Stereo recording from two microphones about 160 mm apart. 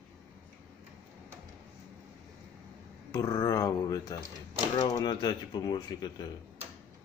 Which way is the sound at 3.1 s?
20° left (ahead or behind).